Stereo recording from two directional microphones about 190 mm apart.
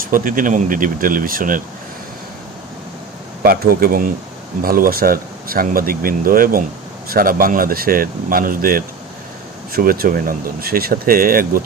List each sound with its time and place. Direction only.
0.0 s speech: 45° right (ahead or behind)
3.4 s speech: 50° right (ahead or behind)